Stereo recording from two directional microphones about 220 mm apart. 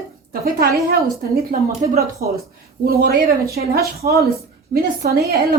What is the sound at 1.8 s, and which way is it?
Speech, 45° right (ahead or behind).